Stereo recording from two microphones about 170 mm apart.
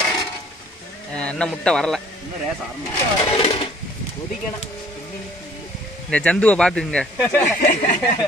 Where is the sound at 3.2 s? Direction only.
35° left (ahead or behind).